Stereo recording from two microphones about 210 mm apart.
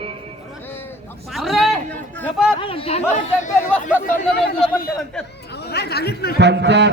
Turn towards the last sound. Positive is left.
turn(degrees=-55)  # may be behind; listen again after turning